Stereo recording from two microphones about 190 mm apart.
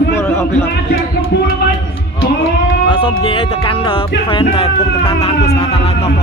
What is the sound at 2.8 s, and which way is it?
Speech, 30° left (ahead or behind).